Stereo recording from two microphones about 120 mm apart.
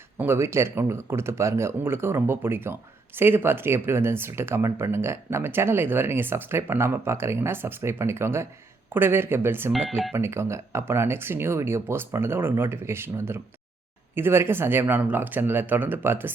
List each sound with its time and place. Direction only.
0.2 s speech: 20° right (ahead or behind)
9.7 s speech: 5° left (ahead or behind)
10.2 s speech: 20° right (ahead or behind)